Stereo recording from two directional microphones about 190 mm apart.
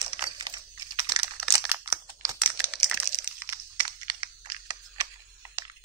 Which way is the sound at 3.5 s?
25° right (ahead or behind).